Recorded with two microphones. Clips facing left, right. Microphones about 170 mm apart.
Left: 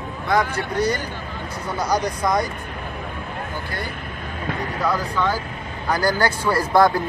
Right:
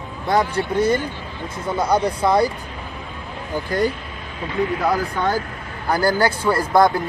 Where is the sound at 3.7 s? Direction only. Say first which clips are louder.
Right 10 dB; 45° right (ahead or behind).